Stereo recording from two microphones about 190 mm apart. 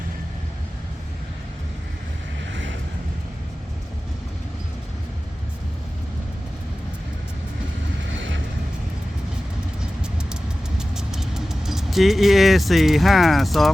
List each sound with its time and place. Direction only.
2.5 s vehicle: 80° right
10.8 s vehicle: 5° right (ahead or behind)